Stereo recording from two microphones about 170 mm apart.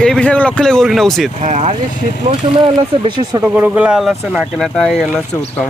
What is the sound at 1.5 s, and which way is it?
Speech, 40° right (ahead or behind).